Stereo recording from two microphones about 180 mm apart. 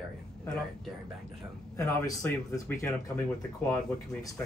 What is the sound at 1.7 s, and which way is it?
Speech, 15° left (ahead or behind).